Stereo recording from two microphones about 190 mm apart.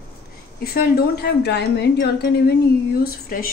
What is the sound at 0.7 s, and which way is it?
A woman's voice, 50° left (ahead or behind).